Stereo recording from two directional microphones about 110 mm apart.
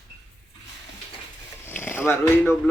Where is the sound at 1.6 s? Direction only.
20° left (ahead or behind).